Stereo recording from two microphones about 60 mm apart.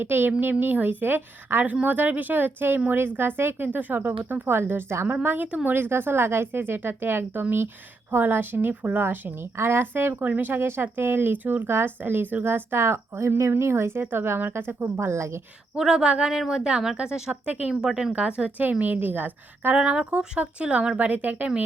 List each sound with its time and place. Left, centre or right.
0.0 s speech: right
5.2 s speech: right
9.0 s speech: right
14.9 s a woman's voice: right
15.8 s speech: centre
17.7 s speech: centre; by 19.7 s right
19.7 s speech: right